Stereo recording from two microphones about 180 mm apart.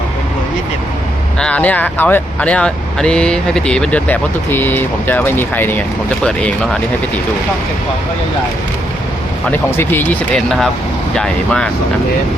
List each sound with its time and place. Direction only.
1.4 s speech: 5° left (ahead or behind)
9.5 s speech: 10° left (ahead or behind)